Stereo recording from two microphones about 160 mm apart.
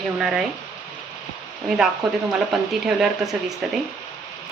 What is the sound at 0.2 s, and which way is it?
Speech, centre (ahead or behind).